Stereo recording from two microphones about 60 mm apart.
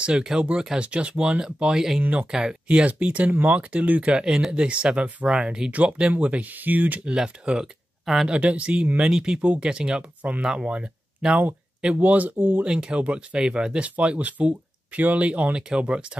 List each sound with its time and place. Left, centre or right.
0.0 s speech: centre
2.0 s speech: right
7.1 s speech: centre
8.0 s speech: centre
8.3 s speech: right
9.1 s speech: centre; by 12.6 s right
12.6 s speech: centre